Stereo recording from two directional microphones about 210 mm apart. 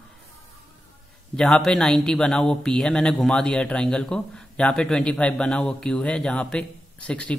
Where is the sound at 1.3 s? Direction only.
5° left (ahead or behind).